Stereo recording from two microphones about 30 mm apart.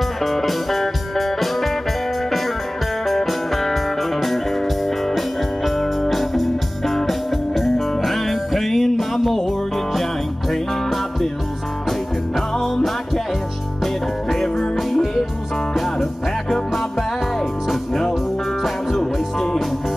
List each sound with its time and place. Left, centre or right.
0.2 s music: centre
3.1 s music: centre
5.8 s music: centre
12.5 s music: centre
14.3 s music: centre
14.9 s music: centre
18.9 s music: centre